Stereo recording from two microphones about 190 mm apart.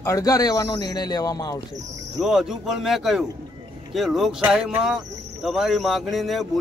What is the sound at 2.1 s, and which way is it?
Speech, centre (ahead or behind).